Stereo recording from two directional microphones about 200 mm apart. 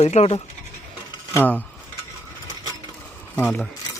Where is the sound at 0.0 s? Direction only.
30° left (ahead or behind).